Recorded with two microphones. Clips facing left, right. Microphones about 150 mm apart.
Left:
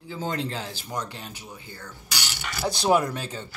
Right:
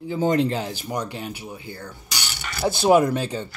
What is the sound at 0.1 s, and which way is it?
Speech, 15° right (ahead or behind).